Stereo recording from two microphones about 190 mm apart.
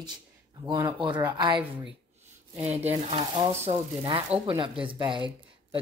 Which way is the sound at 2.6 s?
35° right (ahead or behind).